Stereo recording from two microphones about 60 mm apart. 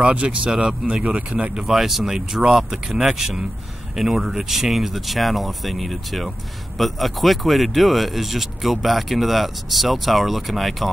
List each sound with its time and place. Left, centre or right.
0.0 s speech: right; by 10.9 s centre